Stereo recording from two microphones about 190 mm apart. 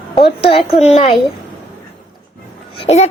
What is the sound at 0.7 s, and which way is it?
Speech, 30° left (ahead or behind).